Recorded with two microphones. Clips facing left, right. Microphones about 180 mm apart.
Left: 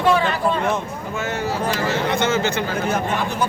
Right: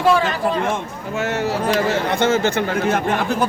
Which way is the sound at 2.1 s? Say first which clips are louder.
Right 3 dB; 50° right (ahead or behind).